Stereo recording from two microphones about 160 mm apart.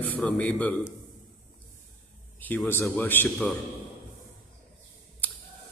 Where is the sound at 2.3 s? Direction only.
10° left (ahead or behind).